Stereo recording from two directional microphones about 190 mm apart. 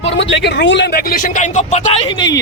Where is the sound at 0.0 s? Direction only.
70° left (ahead or behind).